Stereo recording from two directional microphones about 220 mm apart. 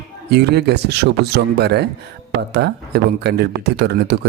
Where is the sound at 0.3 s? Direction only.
50° right (ahead or behind).